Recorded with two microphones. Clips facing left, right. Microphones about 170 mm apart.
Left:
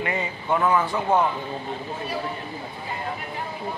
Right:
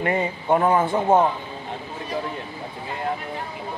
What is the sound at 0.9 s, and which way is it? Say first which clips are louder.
Speech: right 4 dB; 25° right (ahead or behind).